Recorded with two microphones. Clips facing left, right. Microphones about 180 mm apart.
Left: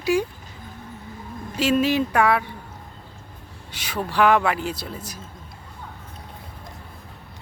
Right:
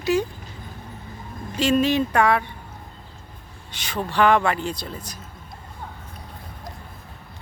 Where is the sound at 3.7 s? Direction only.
10° left (ahead or behind).